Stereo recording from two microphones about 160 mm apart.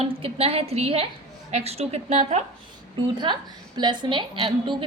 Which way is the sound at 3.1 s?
30° right (ahead or behind).